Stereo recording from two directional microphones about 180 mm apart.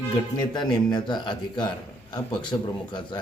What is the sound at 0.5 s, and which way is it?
A man's voice, 25° left (ahead or behind).